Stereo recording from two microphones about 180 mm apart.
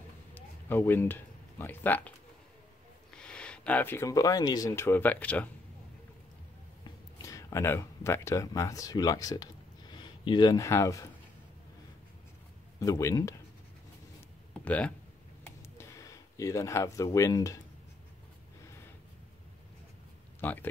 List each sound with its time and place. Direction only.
0.3 s a sound: 10° left (ahead or behind)
3.1 s speech: 5° left (ahead or behind)
7.2 s speech: 20° left (ahead or behind)
12.8 s speech: 20° left (ahead or behind)
14.6 s speech: 5° left (ahead or behind)
15.4 s a sound: 15° left (ahead or behind)
20.3 s speech: 10° left (ahead or behind)